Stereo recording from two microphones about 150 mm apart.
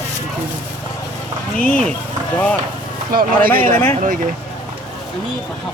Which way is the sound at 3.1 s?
75° right (ahead or behind).